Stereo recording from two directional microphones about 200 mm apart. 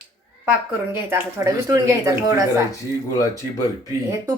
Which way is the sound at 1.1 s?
15° right (ahead or behind).